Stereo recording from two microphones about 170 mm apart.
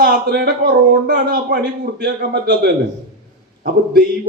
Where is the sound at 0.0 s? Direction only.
60° right (ahead or behind).